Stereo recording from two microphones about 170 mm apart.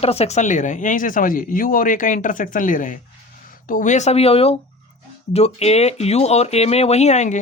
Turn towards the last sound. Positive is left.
turn(degrees=40)  # may be behind; listen again after turning